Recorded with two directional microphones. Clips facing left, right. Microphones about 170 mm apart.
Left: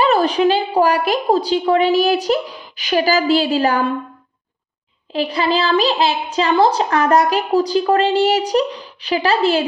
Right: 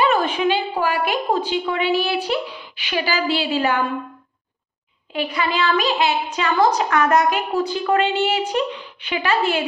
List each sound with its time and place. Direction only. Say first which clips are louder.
0.0 s a woman's voice: left 4 dB; 40° left (ahead or behind)
5.1 s a woman's voice: left 5 dB; 30° left (ahead or behind)